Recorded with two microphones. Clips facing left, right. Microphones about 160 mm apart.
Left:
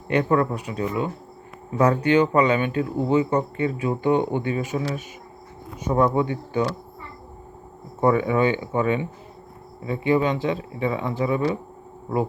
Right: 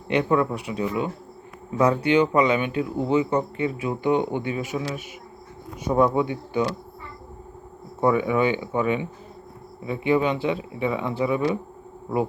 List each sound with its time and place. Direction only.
0.1 s speech: 15° right (ahead or behind)
8.0 s speech: 15° right (ahead or behind)